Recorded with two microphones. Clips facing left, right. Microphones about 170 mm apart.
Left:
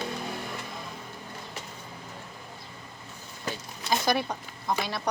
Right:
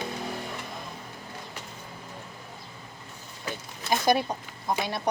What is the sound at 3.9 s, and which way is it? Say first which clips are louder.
Speech: right 3 dB; 20° right (ahead or behind).